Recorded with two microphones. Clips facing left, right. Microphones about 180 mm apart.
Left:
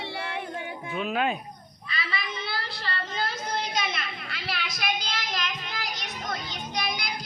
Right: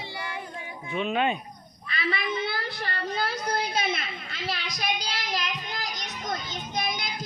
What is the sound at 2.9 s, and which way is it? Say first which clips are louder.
A woman's voice: right 2 dB; 35° right (ahead or behind).